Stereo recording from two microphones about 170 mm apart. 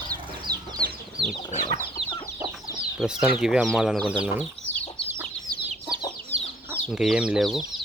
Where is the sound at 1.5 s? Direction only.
45° left (ahead or behind).